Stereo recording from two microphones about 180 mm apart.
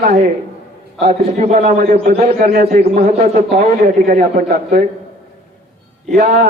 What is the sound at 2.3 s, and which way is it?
A man's voice, 55° right (ahead or behind).